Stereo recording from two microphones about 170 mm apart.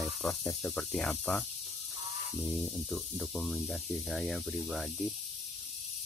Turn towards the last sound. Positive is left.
turn(degrees=0)  # may be behind; listen again after turning